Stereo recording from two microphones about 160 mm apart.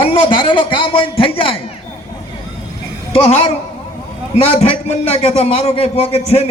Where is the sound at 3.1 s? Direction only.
40° left (ahead or behind).